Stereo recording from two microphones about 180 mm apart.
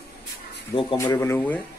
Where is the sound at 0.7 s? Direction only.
30° left (ahead or behind).